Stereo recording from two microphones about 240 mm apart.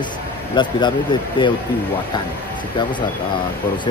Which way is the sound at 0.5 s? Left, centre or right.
Centre.